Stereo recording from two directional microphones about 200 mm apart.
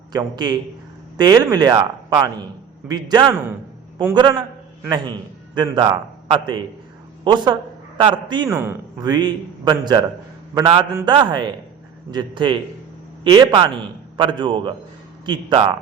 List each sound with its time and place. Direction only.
0.1 s a man's voice: 20° right (ahead or behind)
5.5 s a man's voice: 20° right (ahead or behind)